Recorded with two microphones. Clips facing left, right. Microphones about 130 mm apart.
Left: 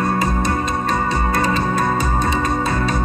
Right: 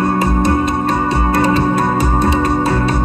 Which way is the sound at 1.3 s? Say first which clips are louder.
Right 8 dB; 65° right (ahead or behind).